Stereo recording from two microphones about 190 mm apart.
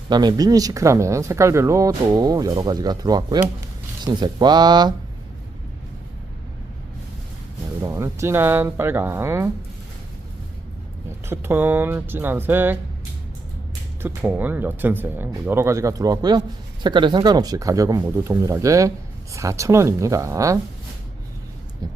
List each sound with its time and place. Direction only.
0.1 s speech: 20° right (ahead or behind)
7.8 s speech: 15° right (ahead or behind)
11.3 s speech: 10° right (ahead or behind)
14.0 s speech: 10° right (ahead or behind)